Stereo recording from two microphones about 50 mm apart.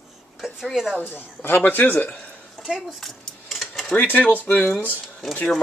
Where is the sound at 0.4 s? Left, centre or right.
Centre.